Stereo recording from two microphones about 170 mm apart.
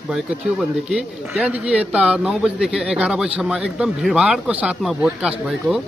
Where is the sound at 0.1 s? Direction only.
5° right (ahead or behind).